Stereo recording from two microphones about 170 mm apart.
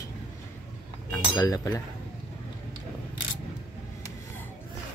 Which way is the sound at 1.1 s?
20° left (ahead or behind).